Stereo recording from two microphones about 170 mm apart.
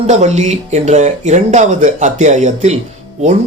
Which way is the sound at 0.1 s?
40° right (ahead or behind).